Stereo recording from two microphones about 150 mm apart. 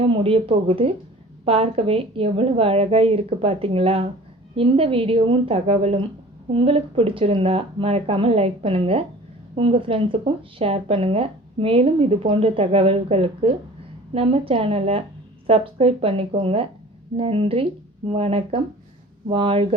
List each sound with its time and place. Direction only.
0.0 s speech: 40° right (ahead or behind)